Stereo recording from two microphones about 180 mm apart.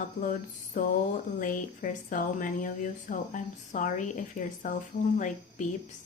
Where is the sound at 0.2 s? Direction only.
45° left (ahead or behind).